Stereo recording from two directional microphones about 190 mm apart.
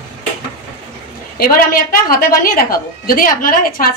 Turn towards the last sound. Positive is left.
turn(degrees=50)  # may be behind; listen again after turning